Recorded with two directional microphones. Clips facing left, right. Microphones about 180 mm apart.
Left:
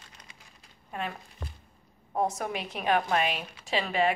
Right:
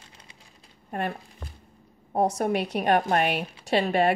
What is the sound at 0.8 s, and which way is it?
Speech, 60° right (ahead or behind).